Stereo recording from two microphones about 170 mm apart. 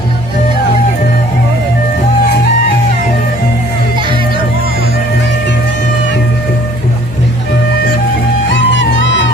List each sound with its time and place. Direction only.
8.4 s music: 90° left